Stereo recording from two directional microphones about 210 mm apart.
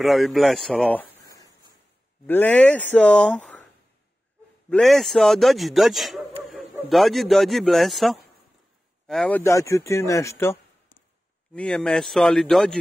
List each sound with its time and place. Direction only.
0.0 s a man's voice: centre (ahead or behind)
4.6 s a man's voice: 5° left (ahead or behind)
9.4 s speech: 15° left (ahead or behind)
11.5 s a man's voice: 5° left (ahead or behind)